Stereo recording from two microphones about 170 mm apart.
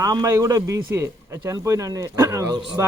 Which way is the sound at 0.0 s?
20° right (ahead or behind).